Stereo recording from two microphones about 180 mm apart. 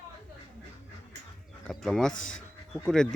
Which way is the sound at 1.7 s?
Centre (ahead or behind).